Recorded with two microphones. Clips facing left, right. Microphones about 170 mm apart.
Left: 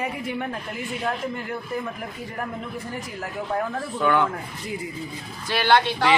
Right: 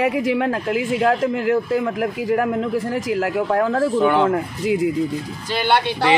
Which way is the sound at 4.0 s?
25° right (ahead or behind).